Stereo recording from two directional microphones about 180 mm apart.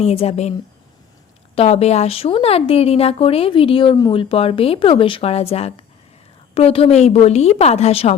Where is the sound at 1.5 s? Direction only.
35° left (ahead or behind).